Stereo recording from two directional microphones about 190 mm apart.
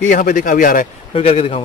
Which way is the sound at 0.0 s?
45° left (ahead or behind).